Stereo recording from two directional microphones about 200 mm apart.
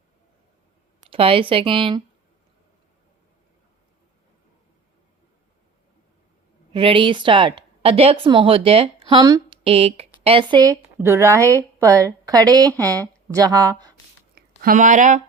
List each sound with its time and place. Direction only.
1.1 s a woman's voice: 25° right (ahead or behind)
6.7 s a woman's voice: 25° right (ahead or behind)
14.6 s speech: 40° right (ahead or behind)